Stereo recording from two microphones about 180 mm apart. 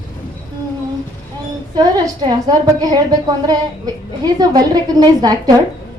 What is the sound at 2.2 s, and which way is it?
Speech, 20° right (ahead or behind).